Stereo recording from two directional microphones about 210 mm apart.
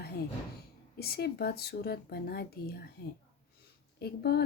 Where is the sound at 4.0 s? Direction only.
50° left (ahead or behind).